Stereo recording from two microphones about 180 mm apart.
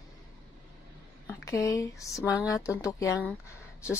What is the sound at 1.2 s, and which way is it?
Speech, 15° left (ahead or behind).